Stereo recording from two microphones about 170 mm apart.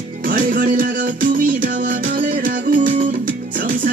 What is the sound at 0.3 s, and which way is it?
Music, 55° right (ahead or behind).